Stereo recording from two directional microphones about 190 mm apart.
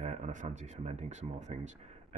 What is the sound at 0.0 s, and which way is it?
Speech, 35° right (ahead or behind).